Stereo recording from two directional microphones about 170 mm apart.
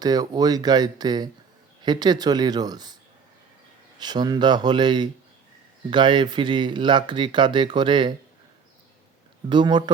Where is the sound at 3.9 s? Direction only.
25° right (ahead or behind).